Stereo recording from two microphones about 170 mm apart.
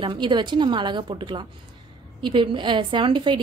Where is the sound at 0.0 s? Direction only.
25° right (ahead or behind).